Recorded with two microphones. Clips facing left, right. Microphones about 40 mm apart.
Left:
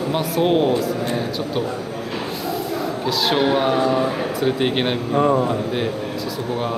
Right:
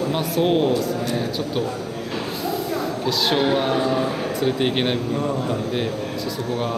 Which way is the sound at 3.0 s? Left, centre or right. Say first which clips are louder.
Left 2 dB; centre.